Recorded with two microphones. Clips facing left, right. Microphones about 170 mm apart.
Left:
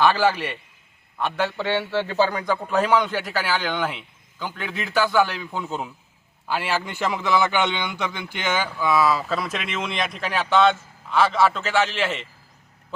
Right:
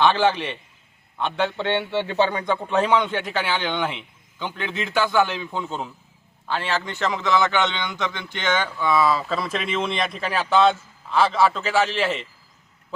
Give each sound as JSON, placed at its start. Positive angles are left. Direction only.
{"t": 0.3, "sound": "a man's voice", "side_deg": 5}
{"t": 5.1, "sound": "speech", "side_deg": -20}
{"t": 5.5, "sound": "a man's voice", "side_deg": 5}